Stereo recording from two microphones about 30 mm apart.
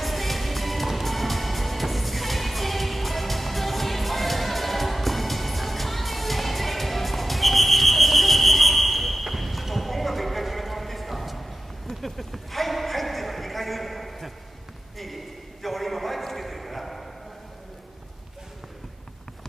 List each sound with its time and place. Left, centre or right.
0.0 s music: centre
11.9 s clip-clop: centre
15.0 s a sound: centre